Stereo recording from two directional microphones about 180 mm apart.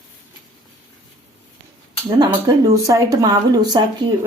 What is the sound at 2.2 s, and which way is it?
Speech, 20° right (ahead or behind).